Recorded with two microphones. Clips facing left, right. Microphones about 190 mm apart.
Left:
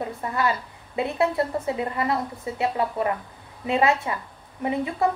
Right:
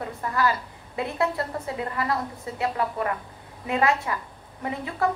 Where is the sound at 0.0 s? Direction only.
25° left (ahead or behind).